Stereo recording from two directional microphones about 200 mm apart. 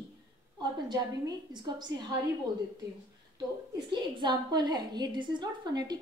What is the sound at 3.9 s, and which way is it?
A woman's voice, 20° right (ahead or behind).